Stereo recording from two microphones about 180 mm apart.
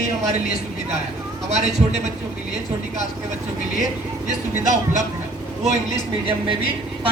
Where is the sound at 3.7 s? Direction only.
40° right (ahead or behind).